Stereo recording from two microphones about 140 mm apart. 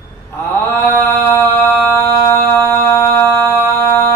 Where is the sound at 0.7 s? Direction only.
15° left (ahead or behind).